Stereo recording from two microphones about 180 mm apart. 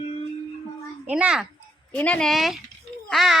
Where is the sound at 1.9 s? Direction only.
5° left (ahead or behind).